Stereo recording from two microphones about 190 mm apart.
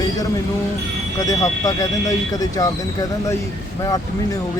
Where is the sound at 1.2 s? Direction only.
20° left (ahead or behind).